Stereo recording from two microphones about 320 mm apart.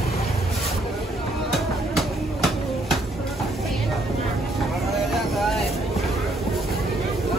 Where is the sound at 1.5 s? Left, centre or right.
Centre.